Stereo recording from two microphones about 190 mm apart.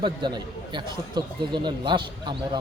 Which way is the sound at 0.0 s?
25° right (ahead or behind).